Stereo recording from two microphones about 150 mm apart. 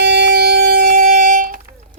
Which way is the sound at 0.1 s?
90° right.